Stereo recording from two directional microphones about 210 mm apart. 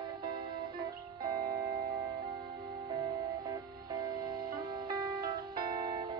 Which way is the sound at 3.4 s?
20° right (ahead or behind).